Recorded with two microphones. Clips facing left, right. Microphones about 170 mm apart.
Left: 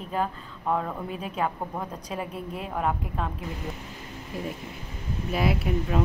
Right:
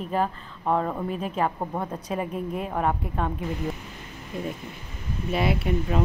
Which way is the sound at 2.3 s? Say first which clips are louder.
Right 5 dB; 45° right (ahead or behind).